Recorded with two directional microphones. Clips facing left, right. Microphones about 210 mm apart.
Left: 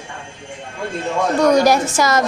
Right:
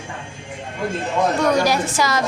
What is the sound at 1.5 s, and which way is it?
Speech, 45° left (ahead or behind).